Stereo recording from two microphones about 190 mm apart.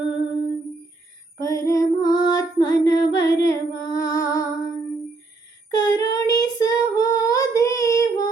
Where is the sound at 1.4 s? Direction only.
15° left (ahead or behind).